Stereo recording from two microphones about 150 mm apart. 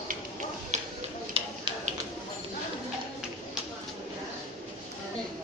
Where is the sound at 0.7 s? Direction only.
50° right (ahead or behind).